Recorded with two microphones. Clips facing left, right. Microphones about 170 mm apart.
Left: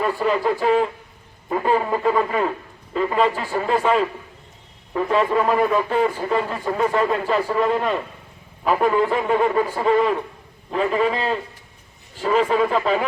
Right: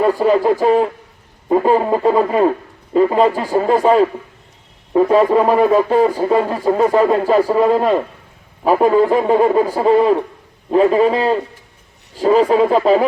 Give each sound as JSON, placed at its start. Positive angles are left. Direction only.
{"t": 0.0, "sound": "speech", "side_deg": -35}